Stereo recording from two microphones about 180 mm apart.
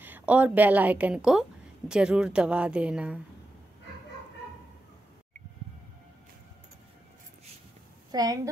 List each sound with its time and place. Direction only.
0.0 s a woman's voice: 10° right (ahead or behind)
8.1 s a woman's voice: 20° right (ahead or behind)